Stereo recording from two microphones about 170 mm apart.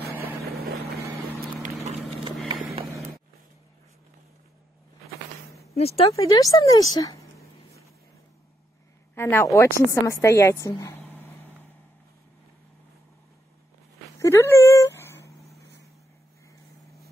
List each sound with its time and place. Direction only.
0.0 s vehicle: 65° right (ahead or behind)
1.9 s clip-clop: 30° right (ahead or behind)
5.8 s speech: 35° left (ahead or behind)
6.1 s speech: 20° left (ahead or behind)
9.1 s a woman's voice: 15° left (ahead or behind)
14.2 s dog: 15° left (ahead or behind)